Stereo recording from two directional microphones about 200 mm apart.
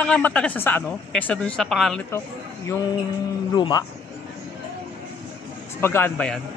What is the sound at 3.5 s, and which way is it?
Speech, 20° left (ahead or behind).